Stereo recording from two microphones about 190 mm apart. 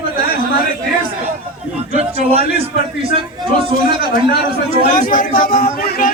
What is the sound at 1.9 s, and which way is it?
A man's voice, 30° right (ahead or behind).